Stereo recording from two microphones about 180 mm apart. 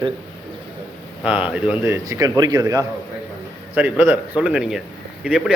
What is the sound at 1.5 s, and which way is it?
Speech, 10° right (ahead or behind).